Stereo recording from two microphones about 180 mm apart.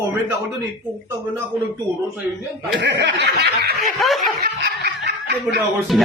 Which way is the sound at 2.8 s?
75° right (ahead or behind).